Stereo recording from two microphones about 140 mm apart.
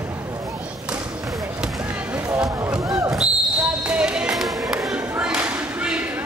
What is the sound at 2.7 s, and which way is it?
Basketball bounce, 25° right (ahead or behind).